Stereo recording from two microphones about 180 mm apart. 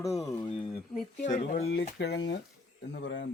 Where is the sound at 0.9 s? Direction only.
45° left (ahead or behind).